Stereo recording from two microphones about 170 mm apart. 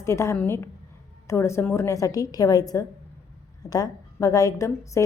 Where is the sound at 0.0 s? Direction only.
15° left (ahead or behind).